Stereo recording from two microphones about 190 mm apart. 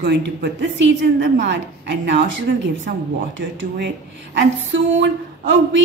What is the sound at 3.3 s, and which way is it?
A woman's voice, 70° right (ahead or behind).